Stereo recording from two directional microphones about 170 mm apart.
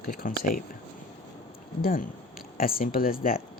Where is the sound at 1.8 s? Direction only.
55° left (ahead or behind).